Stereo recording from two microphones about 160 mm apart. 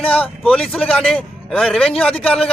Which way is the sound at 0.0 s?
5° left (ahead or behind).